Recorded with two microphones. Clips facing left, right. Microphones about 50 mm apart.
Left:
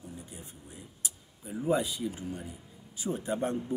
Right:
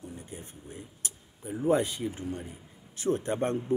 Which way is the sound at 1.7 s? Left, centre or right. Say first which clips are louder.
Right 3 dB; right.